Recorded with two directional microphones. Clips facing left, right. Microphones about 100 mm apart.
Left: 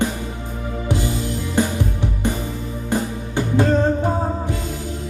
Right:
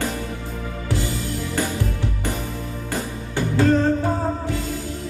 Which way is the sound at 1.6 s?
20° left (ahead or behind).